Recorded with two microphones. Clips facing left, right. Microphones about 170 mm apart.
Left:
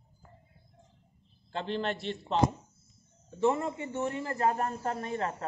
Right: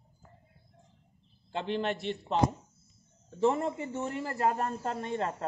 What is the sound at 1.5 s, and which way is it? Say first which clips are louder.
Speech: right 1 dB; 15° right (ahead or behind).